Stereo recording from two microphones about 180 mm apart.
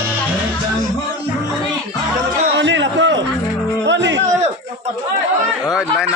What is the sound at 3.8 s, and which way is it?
Music, 80° right.